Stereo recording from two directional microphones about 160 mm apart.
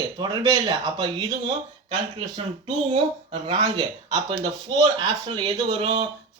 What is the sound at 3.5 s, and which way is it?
Speech, 30° right (ahead or behind).